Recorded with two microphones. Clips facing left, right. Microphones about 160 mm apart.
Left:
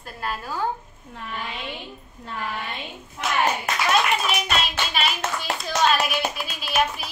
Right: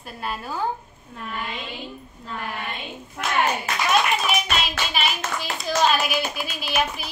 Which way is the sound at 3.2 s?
60° right (ahead or behind).